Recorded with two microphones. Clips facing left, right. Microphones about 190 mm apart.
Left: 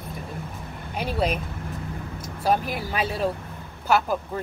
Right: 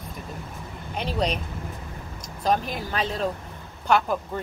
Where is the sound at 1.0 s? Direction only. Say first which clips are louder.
Left 1 dB; 5° left (ahead or behind).